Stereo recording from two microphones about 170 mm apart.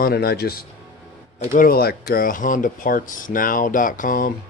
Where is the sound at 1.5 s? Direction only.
55° left (ahead or behind).